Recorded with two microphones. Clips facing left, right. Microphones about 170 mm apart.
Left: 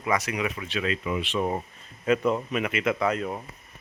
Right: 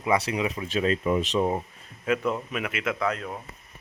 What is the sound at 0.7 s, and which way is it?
Speech, 40° right (ahead or behind).